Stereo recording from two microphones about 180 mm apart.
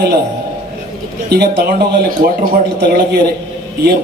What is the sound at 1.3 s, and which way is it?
Speech, 60° right (ahead or behind).